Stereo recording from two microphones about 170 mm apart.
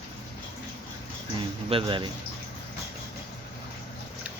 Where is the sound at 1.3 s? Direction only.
30° right (ahead or behind).